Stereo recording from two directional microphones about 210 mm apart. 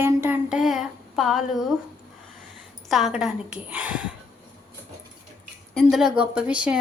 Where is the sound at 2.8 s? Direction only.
Centre (ahead or behind).